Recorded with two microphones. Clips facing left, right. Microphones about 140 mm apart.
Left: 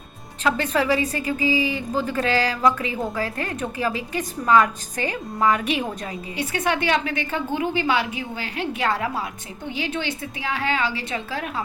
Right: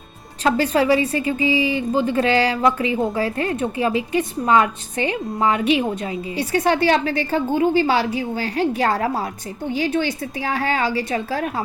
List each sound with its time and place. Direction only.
0.4 s a woman's voice: 30° right (ahead or behind)